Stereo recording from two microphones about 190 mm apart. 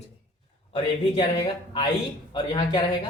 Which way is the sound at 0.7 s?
25° left (ahead or behind).